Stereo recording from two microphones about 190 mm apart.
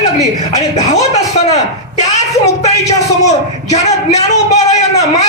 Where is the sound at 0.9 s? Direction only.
35° left (ahead or behind).